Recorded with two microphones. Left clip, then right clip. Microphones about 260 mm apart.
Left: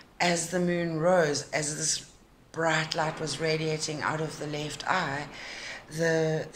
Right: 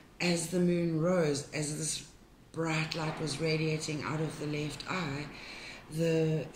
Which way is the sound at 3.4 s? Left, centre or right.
Left.